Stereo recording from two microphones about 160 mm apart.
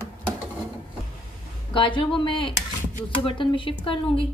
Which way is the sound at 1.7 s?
30° left (ahead or behind).